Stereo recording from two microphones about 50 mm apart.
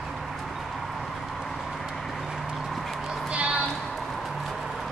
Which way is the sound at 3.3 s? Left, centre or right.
Right.